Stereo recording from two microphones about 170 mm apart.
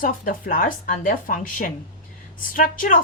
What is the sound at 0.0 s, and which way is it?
A woman's voice, 55° left (ahead or behind).